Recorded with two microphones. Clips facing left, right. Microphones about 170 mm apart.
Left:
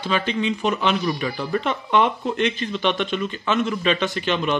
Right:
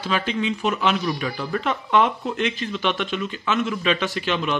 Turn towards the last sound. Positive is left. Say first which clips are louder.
# left 2 dB
turn(degrees=0)  # may be behind; listen again after turning